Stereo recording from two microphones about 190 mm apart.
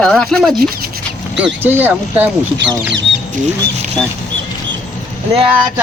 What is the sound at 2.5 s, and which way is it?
Speech, 70° right (ahead or behind).